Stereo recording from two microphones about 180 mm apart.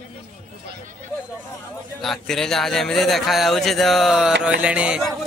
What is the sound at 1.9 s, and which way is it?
Speech, centre (ahead or behind).